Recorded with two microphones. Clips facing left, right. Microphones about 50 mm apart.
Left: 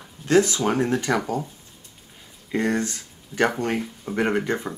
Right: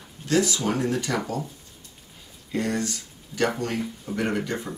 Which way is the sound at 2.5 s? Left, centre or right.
Left.